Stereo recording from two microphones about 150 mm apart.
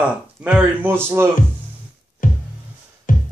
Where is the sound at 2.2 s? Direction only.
65° left (ahead or behind).